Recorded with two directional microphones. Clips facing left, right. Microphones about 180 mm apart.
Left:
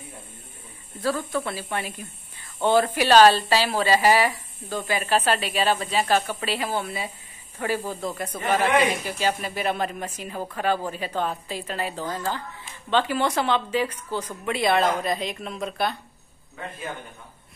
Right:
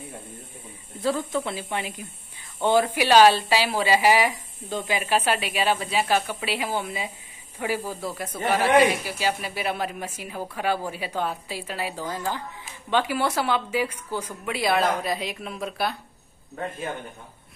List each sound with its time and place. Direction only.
1.0 s a woman's voice: 20° right (ahead or behind); by 16.0 s 5° right (ahead or behind)